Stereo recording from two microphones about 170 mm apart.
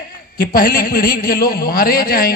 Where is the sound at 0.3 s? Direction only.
60° left (ahead or behind).